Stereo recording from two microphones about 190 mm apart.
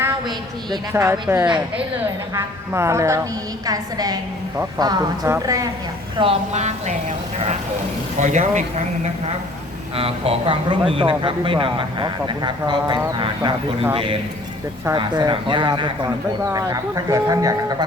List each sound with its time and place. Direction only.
0.3 s speech: 20° right (ahead or behind)
6.1 s a woman's voice: 30° right (ahead or behind)
8.2 s a woman's voice: 40° right (ahead or behind)
9.9 s speech: 30° right (ahead or behind)